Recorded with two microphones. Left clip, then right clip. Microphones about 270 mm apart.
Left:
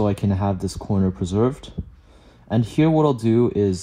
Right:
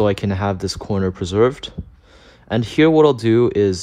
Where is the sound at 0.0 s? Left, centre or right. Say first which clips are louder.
Right 5 dB; left.